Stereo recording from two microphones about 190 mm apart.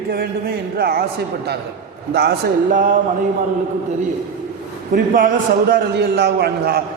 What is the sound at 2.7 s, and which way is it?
Speech, 45° right (ahead or behind).